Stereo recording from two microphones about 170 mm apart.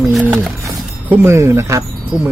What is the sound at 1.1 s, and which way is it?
Speech, 15° right (ahead or behind).